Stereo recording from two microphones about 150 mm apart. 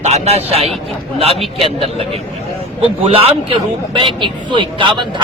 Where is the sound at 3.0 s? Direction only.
40° right (ahead or behind).